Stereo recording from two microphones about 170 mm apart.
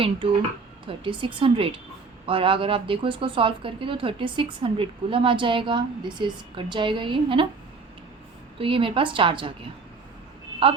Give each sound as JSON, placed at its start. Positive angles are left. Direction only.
{"t": 0.0, "sound": "a woman's voice", "side_deg": -30}
{"t": 8.5, "sound": "a woman's voice", "side_deg": -30}